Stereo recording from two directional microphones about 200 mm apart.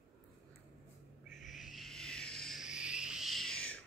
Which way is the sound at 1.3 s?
40° left (ahead or behind).